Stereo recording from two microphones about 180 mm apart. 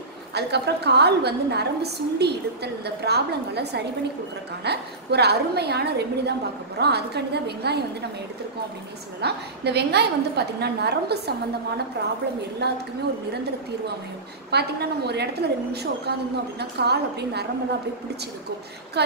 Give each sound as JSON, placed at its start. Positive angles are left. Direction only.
{"t": 0.3, "sound": "a woman's voice", "side_deg": -70}
{"t": 9.2, "sound": "a woman's voice", "side_deg": -65}
{"t": 14.5, "sound": "a woman's voice", "side_deg": -65}
{"t": 19.0, "sound": "speech", "side_deg": -65}